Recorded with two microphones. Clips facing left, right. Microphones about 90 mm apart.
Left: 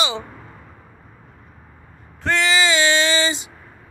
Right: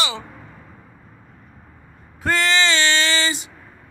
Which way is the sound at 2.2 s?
Centre (ahead or behind).